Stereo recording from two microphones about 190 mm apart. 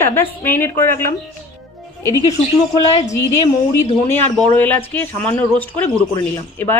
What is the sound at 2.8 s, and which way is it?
Speech, 30° left (ahead or behind).